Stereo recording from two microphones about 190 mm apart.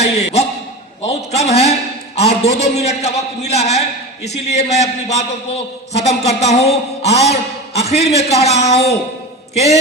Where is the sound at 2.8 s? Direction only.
35° left (ahead or behind).